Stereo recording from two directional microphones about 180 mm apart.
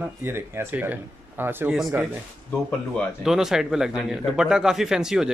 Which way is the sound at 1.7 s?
Centre (ahead or behind).